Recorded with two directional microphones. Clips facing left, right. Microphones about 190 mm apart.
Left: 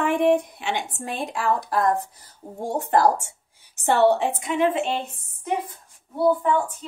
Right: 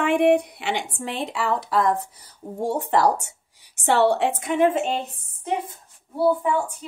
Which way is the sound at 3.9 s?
65° right (ahead or behind).